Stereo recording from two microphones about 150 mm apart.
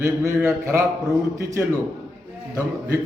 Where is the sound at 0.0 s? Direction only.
15° right (ahead or behind).